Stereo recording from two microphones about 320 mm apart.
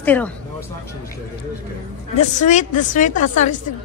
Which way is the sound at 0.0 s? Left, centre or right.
Centre.